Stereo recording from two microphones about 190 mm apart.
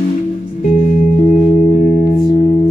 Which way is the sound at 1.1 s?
40° left (ahead or behind).